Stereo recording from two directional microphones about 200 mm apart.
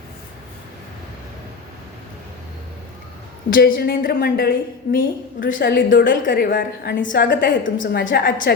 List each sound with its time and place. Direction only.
3.5 s a woman's voice: 45° left (ahead or behind)